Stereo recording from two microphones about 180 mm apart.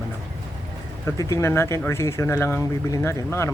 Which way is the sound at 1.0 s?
15° left (ahead or behind).